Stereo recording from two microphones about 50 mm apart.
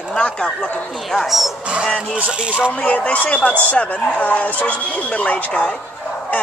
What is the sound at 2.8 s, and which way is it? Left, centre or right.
Speech, left.